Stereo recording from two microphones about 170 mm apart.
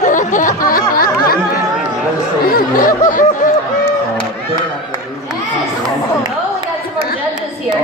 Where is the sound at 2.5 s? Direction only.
55° left (ahead or behind).